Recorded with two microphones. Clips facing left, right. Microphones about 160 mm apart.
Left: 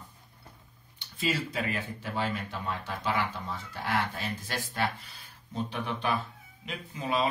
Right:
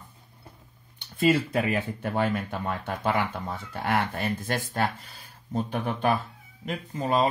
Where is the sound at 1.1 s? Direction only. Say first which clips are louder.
Right 9 dB; 55° right (ahead or behind).